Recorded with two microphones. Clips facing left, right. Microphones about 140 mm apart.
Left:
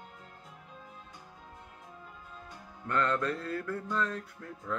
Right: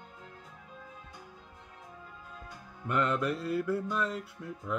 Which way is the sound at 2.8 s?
15° right (ahead or behind).